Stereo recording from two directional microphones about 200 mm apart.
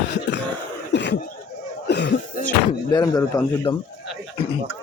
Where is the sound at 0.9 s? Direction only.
60° left (ahead or behind).